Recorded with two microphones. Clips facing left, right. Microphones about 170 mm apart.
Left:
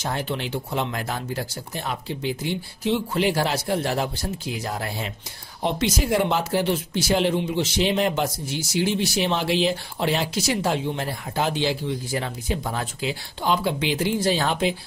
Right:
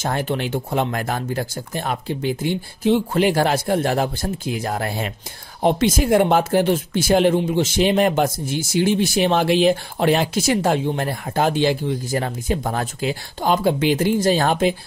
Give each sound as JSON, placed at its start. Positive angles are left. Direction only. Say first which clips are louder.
{"t": 0.0, "sound": "speech", "louder": "right 5 dB", "side_deg": -50}